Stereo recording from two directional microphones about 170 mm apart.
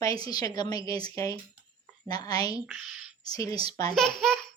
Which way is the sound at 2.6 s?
5° right (ahead or behind).